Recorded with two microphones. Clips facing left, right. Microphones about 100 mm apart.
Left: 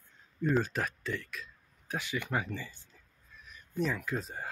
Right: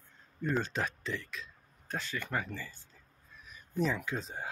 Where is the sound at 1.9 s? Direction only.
15° left (ahead or behind).